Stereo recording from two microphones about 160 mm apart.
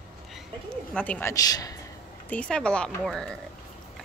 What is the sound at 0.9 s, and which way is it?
Speech, 10° left (ahead or behind).